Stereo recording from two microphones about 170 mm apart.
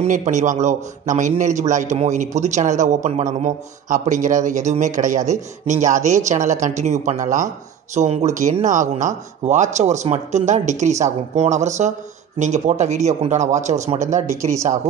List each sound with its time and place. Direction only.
0.0 s a man's voice: 45° right (ahead or behind)
14.3 s speech: 20° right (ahead or behind)